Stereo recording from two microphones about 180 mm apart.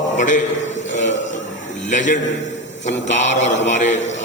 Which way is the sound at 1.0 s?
90° left.